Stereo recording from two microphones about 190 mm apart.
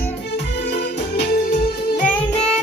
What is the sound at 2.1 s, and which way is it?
Music, 5° left (ahead or behind).